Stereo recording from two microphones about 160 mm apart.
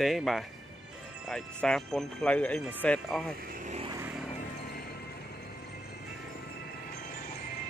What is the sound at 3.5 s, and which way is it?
Vehicle, 50° right (ahead or behind).